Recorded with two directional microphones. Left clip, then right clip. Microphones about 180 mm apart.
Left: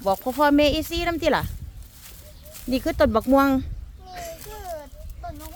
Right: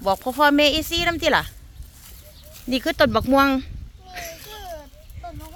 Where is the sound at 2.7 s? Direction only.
Centre (ahead or behind).